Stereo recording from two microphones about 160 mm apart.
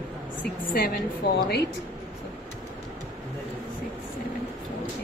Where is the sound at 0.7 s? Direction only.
70° left (ahead or behind).